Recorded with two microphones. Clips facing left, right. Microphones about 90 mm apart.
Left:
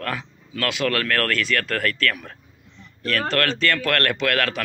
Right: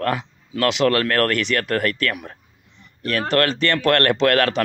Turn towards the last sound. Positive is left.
turn(degrees=-30)  # may be behind; listen again after turning